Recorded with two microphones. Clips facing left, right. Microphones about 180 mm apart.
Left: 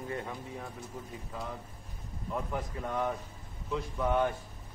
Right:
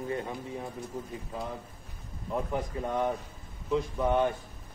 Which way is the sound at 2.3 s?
25° right (ahead or behind).